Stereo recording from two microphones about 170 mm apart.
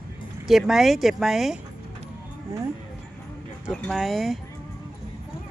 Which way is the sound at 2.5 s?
15° right (ahead or behind).